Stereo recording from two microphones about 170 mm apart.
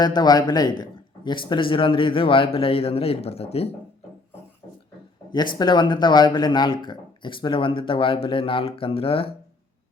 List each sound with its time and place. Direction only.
0.0 s a man's voice: 25° left (ahead or behind)
5.5 s speech: 25° left (ahead or behind)